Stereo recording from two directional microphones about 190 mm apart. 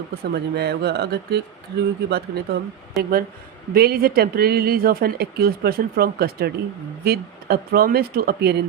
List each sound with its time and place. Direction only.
0.1 s speech: 55° right (ahead or behind)